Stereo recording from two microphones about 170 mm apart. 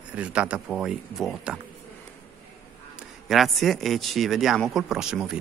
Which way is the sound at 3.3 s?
Centre (ahead or behind).